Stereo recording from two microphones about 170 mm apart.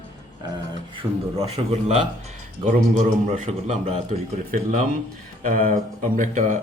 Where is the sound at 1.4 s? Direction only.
40° right (ahead or behind).